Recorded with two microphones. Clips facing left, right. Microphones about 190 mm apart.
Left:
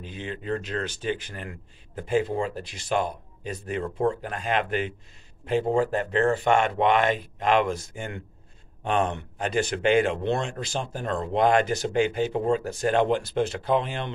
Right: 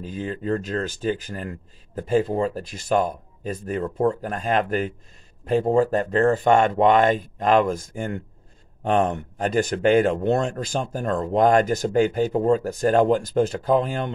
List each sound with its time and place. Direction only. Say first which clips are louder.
0.0 s speech: right 6 dB; 45° right (ahead or behind)